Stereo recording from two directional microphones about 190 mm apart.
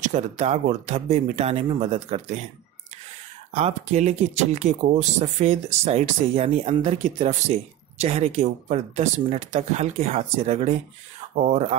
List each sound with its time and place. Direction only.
0.0 s speech: 40° right (ahead or behind)
3.5 s speech: 35° right (ahead or behind)